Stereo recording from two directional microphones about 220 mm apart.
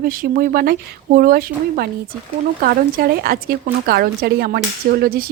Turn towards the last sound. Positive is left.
turn(degrees=-45)  # may be behind; listen again after turning